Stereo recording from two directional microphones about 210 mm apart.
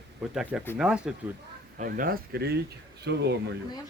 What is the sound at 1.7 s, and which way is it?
Speech, 40° right (ahead or behind).